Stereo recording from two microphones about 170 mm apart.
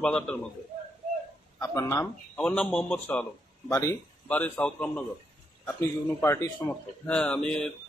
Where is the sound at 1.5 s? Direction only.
20° left (ahead or behind).